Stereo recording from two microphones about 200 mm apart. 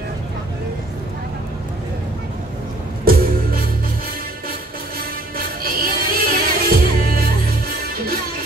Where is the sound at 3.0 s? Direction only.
50° right (ahead or behind).